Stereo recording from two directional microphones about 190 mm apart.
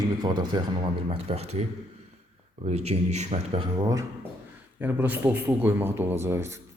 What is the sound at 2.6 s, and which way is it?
Speech, 35° right (ahead or behind).